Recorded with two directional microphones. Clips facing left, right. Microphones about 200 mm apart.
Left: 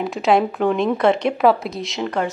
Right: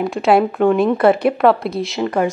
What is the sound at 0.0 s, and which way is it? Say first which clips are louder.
Speech: right 3 dB; centre (ahead or behind).